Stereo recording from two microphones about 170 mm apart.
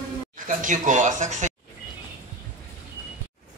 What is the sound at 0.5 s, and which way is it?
Speech, 50° right (ahead or behind).